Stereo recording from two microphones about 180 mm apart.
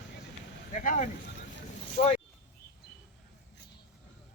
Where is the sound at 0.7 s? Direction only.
45° left (ahead or behind).